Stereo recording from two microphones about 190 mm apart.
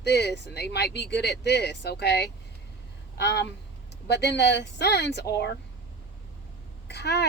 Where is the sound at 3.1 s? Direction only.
60° left (ahead or behind).